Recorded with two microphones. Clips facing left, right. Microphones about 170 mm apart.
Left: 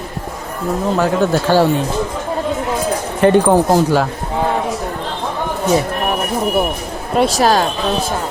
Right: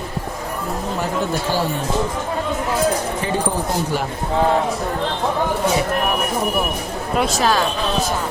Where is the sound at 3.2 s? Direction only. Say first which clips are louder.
Left 10 dB; 70° left (ahead or behind).